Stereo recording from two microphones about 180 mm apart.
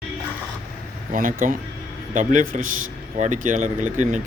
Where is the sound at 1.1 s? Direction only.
50° right (ahead or behind).